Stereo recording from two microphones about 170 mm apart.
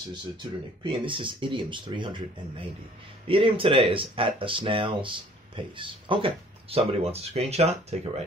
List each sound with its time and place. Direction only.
0.1 s speech: 30° right (ahead or behind)
3.3 s speech: 30° right (ahead or behind)